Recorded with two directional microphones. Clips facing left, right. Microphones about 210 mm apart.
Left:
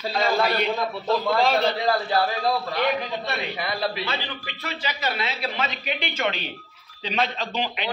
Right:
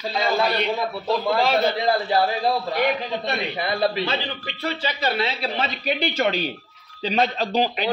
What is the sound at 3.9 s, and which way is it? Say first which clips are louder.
A man's voice: right 4 dB; 30° right (ahead or behind).